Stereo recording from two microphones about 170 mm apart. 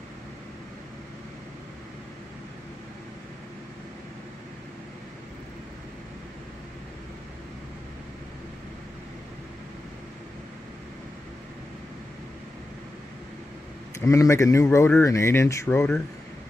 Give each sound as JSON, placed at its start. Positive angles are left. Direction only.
{"t": 13.9, "sound": "speech", "side_deg": 20}